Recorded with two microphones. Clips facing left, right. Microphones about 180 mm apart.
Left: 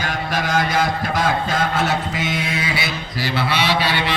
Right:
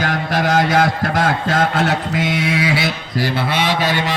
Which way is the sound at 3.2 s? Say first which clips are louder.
Right 2 dB; 50° right (ahead or behind).